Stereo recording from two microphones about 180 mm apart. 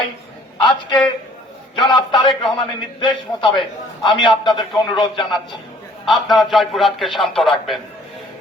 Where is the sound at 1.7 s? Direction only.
25° left (ahead or behind).